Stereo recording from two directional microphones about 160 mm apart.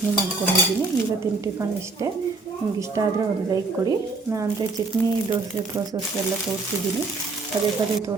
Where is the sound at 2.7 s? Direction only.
20° right (ahead or behind).